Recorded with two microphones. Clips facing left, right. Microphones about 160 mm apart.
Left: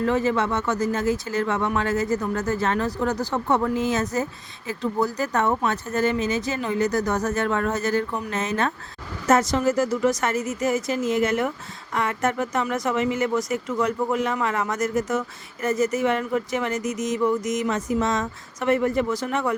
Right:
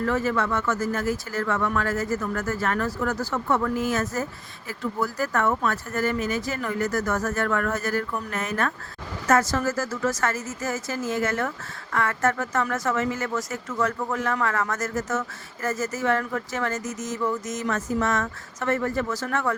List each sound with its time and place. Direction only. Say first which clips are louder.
0.0 s speech: left 3 dB; 20° left (ahead or behind)